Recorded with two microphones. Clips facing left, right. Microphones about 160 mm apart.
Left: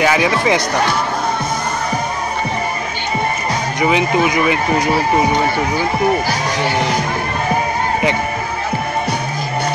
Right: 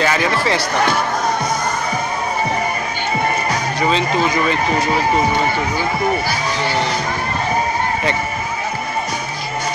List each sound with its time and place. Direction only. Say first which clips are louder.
0.0 s speech: left 3 dB; 15° left (ahead or behind)
3.8 s speech: left 3 dB; 15° left (ahead or behind)